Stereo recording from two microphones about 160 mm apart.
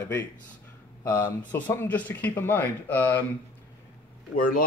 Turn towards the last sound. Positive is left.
turn(degrees=60)  # may be behind; listen again after turning